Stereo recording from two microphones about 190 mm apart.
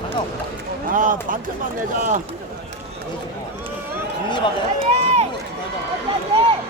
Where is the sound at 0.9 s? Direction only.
45° right (ahead or behind).